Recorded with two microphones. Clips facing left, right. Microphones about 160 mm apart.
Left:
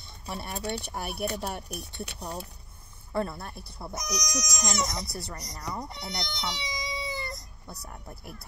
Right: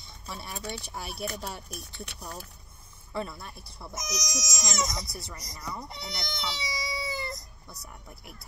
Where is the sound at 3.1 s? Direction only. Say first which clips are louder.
Left 4 dB; 55° left (ahead or behind).